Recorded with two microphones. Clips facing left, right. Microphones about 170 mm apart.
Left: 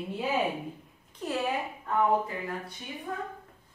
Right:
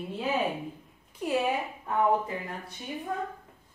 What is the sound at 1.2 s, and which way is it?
Speech, 10° right (ahead or behind).